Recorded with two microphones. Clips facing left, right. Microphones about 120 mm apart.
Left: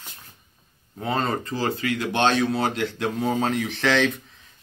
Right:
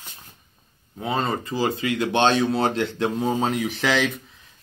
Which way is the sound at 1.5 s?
15° right (ahead or behind).